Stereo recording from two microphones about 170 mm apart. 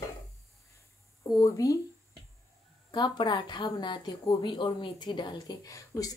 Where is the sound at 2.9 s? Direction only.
25° left (ahead or behind).